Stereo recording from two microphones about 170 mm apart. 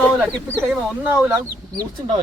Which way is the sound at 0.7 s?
10° right (ahead or behind).